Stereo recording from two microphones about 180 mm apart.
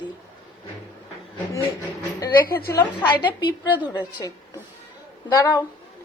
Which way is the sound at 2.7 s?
15° left (ahead or behind).